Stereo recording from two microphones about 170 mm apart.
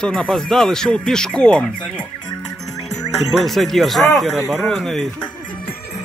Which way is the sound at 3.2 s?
Centre (ahead or behind).